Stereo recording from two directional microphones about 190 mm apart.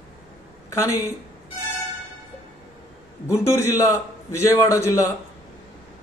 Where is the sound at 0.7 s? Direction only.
15° left (ahead or behind).